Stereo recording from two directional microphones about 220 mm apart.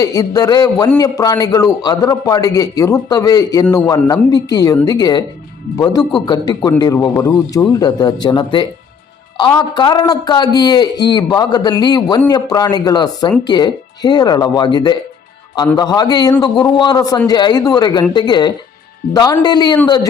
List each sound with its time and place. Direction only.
0.0 s a man's voice: 15° left (ahead or behind)